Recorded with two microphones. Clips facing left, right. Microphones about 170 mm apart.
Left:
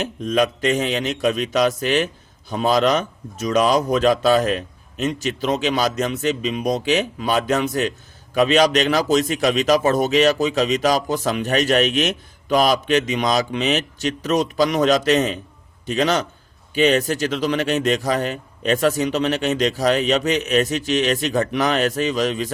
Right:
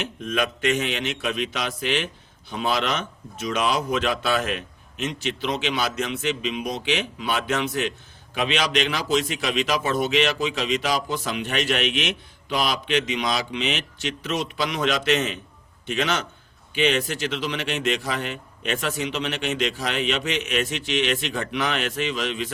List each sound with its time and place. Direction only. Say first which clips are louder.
0.0 s a man's voice: left 6 dB; 35° left (ahead or behind)